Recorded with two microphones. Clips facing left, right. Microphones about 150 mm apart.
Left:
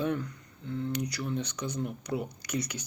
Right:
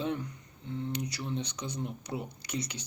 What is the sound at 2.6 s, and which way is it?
Speech, 25° right (ahead or behind).